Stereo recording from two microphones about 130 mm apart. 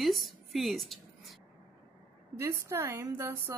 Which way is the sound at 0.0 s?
Centre (ahead or behind).